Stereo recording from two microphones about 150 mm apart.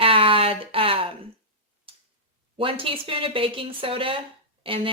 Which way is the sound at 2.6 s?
35° right (ahead or behind).